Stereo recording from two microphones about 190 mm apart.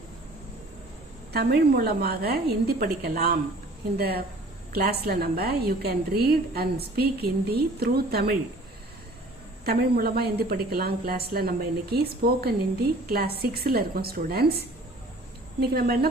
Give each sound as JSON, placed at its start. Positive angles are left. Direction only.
{"t": 1.3, "sound": "a woman's voice", "side_deg": -55}
{"t": 9.6, "sound": "a woman's voice", "side_deg": -55}